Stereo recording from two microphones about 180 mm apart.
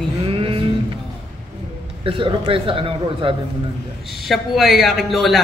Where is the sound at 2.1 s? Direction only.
30° right (ahead or behind).